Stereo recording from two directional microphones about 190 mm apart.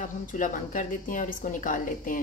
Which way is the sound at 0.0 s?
45° left (ahead or behind).